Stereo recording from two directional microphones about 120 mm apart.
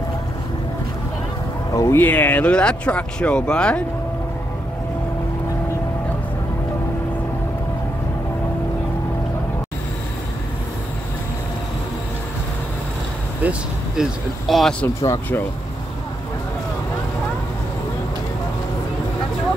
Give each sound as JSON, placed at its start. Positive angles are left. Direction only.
{"t": 1.7, "sound": "speech", "side_deg": 30}
{"t": 2.0, "sound": "speech", "side_deg": 15}
{"t": 13.4, "sound": "a sound", "side_deg": -10}
{"t": 14.5, "sound": "speech", "side_deg": 5}
{"t": 15.0, "sound": "speech", "side_deg": 15}